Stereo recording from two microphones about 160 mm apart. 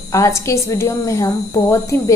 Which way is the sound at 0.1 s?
20° left (ahead or behind).